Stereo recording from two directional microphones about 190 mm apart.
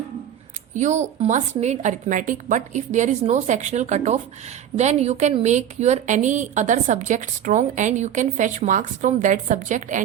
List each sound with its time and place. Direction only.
0.7 s a woman's voice: 40° right (ahead or behind)